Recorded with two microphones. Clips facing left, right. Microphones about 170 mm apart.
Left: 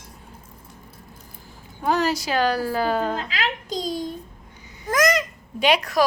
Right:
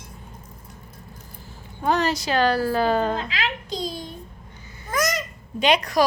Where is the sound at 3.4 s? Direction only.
40° left (ahead or behind).